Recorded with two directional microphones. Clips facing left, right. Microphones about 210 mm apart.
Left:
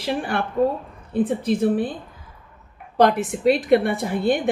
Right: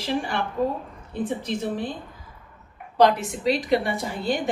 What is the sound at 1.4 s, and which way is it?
Speech, 55° left (ahead or behind).